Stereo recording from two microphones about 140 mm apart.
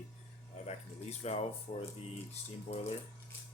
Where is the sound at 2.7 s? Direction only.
45° left (ahead or behind).